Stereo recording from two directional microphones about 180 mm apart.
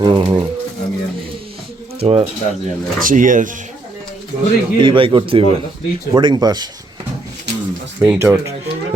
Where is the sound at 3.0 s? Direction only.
50° right (ahead or behind).